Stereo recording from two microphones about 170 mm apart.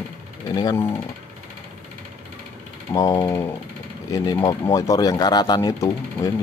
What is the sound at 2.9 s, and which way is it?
Speech, 20° left (ahead or behind).